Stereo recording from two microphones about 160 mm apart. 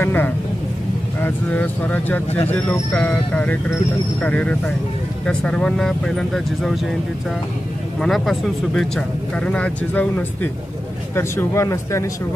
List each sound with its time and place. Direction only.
0.0 s speech: 10° left (ahead or behind)
8.0 s speech: centre (ahead or behind); by 12.1 s 20° left (ahead or behind)